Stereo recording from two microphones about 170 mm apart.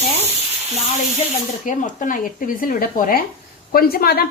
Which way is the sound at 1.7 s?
50° left (ahead or behind).